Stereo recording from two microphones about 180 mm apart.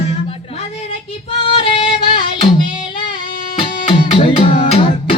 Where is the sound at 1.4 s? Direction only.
30° left (ahead or behind).